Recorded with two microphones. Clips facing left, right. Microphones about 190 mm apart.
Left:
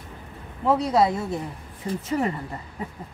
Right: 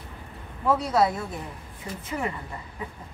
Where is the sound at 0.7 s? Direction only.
20° left (ahead or behind).